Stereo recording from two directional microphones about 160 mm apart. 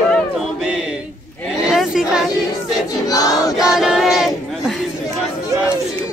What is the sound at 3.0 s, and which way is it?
Choir, 20° left (ahead or behind).